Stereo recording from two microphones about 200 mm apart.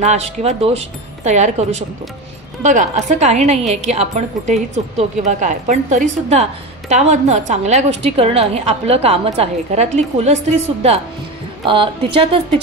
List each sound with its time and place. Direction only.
0.0 s a woman's voice: 35° right (ahead or behind)